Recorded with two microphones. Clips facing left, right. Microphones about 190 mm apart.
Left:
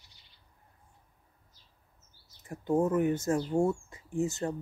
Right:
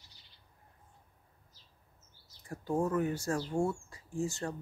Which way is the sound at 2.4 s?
20° left (ahead or behind).